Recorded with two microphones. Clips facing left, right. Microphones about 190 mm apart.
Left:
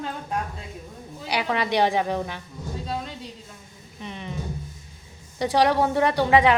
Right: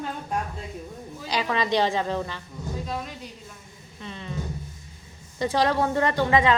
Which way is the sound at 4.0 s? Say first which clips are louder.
Left 2 dB; 15° left (ahead or behind).